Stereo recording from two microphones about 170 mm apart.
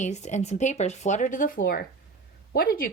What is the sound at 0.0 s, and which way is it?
A woman's voice, 45° left (ahead or behind).